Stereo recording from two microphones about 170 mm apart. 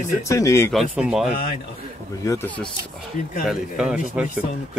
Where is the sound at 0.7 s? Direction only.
5° right (ahead or behind).